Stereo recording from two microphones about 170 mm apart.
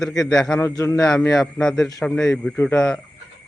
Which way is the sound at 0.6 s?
15° left (ahead or behind).